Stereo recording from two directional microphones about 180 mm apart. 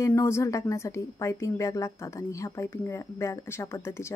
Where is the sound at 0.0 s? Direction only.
15° left (ahead or behind).